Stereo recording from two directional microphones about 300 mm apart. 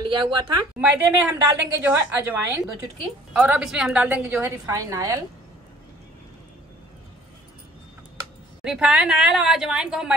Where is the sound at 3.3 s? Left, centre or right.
Centre.